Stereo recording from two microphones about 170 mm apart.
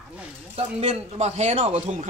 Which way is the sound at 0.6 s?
35° right (ahead or behind).